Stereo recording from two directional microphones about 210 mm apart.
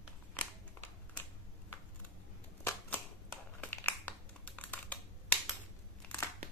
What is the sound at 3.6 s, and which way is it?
Crumpling, 10° left (ahead or behind).